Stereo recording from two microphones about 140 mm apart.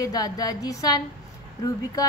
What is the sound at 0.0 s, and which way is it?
A woman's voice, 25° left (ahead or behind).